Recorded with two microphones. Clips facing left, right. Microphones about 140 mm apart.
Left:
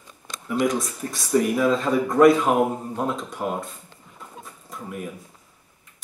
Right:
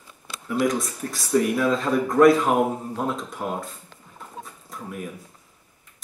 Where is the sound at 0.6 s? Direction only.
Centre (ahead or behind).